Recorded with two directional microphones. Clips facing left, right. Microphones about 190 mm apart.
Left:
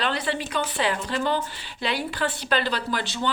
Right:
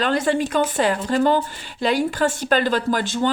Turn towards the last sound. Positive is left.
turn(degrees=-45)  # may be behind; listen again after turning